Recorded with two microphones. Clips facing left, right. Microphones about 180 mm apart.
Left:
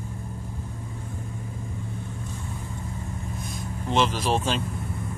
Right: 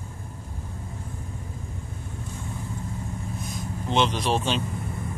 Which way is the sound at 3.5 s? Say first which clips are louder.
Even; centre (ahead or behind).